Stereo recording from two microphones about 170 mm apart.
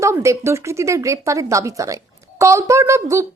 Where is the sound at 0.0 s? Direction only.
15° right (ahead or behind).